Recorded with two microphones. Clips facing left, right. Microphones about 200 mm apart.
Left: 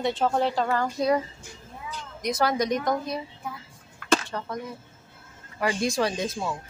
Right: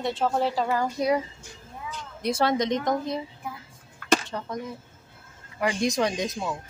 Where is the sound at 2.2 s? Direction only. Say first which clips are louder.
Right 1 dB; 25° right (ahead or behind).